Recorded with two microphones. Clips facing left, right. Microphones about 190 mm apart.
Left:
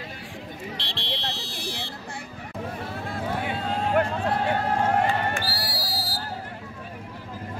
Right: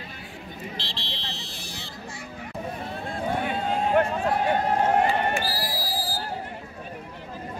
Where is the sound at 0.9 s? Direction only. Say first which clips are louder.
Left 5 dB; 70° left (ahead or behind).